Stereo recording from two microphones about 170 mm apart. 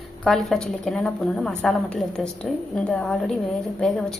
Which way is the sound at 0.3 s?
Centre (ahead or behind).